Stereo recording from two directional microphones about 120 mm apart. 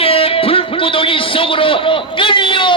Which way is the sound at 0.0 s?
50° left (ahead or behind).